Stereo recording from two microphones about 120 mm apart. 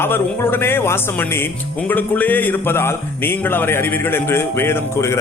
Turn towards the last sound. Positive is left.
turn(degrees=20)  # may be behind; listen again after turning